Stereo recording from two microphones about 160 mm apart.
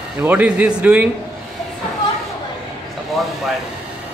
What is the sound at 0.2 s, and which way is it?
Speech, 10° right (ahead or behind).